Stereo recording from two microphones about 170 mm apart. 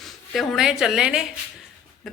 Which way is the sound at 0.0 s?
Centre (ahead or behind).